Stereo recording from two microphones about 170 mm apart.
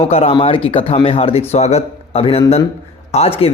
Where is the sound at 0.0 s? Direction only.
35° left (ahead or behind).